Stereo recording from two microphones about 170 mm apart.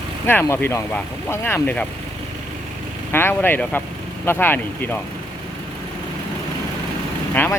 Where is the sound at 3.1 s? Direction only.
15° left (ahead or behind).